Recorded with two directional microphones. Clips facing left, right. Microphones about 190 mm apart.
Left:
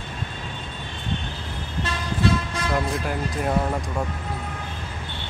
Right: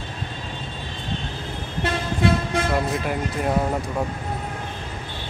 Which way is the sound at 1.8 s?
55° right (ahead or behind).